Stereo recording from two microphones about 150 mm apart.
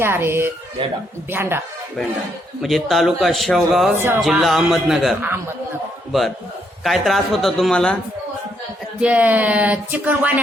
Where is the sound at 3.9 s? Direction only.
15° right (ahead or behind).